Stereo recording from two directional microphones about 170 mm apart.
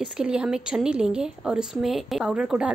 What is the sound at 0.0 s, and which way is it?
A woman's voice, 5° right (ahead or behind).